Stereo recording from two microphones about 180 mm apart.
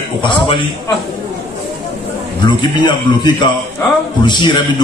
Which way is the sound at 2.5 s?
25° left (ahead or behind).